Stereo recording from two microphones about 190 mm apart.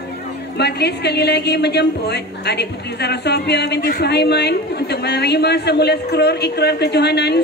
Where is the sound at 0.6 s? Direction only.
60° left (ahead or behind).